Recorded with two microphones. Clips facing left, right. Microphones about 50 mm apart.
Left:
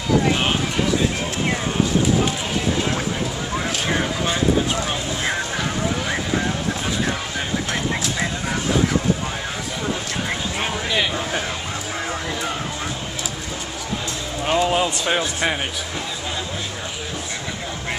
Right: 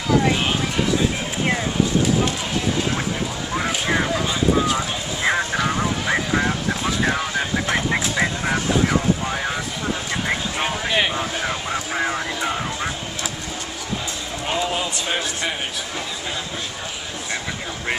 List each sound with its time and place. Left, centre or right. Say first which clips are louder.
3.5 s vehicle: right 2 dB; centre
7.6 s vehicle: right 2 dB; right
10.9 s vehicle: right 1 dB; centre
14.4 s a sound: left 5 dB; centre